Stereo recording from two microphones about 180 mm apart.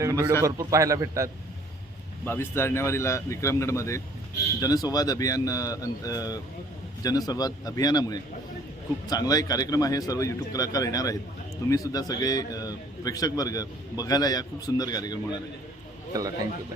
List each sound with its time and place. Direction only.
0.0 s a man's voice: 20° right (ahead or behind)
2.2 s a man's voice: 15° left (ahead or behind)